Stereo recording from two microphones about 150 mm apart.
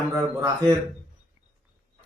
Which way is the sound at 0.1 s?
20° right (ahead or behind).